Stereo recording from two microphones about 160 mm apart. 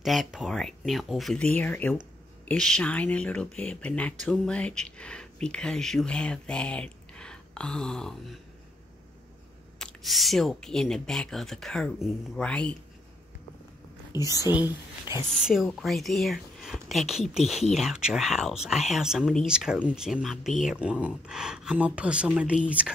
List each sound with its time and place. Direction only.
0.0 s speech: centre (ahead or behind)
9.8 s speech: centre (ahead or behind)
14.2 s a woman's voice: 20° left (ahead or behind)
14.5 s speech: 15° right (ahead or behind)
15.3 s speech: centre (ahead or behind)